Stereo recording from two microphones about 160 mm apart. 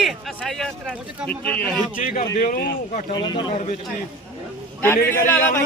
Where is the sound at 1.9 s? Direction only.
55° left (ahead or behind).